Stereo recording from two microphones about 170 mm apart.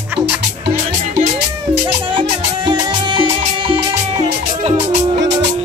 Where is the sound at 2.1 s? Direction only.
25° right (ahead or behind).